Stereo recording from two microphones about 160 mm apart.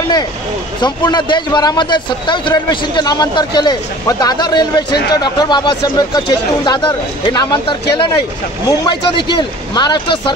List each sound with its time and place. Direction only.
0.8 s a man's voice: 25° left (ahead or behind)